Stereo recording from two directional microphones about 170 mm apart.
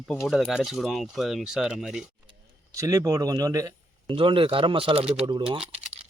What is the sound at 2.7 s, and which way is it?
Speech, 20° right (ahead or behind).